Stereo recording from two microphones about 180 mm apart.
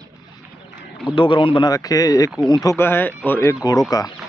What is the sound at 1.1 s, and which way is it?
Speech, 25° left (ahead or behind).